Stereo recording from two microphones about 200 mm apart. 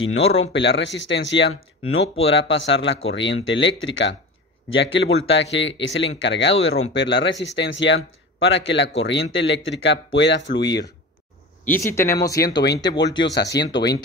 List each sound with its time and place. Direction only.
0.0 s speech: 90° left; by 10.9 s 60° left (ahead or behind)
11.7 s speech: 15° left (ahead or behind)
12.5 s speech: 60° left (ahead or behind)